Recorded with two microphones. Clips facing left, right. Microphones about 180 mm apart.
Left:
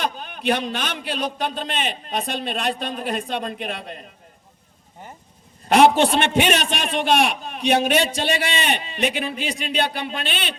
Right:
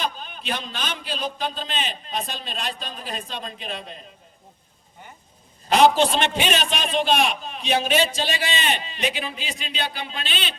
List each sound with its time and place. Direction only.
0.0 s a man's voice: 60° left (ahead or behind)
6.0 s a man's voice: 55° left (ahead or behind)